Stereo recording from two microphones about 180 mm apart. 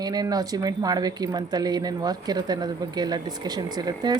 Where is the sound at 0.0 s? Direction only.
20° right (ahead or behind).